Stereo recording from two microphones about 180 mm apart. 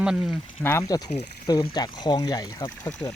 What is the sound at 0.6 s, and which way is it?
Speech, 15° left (ahead or behind).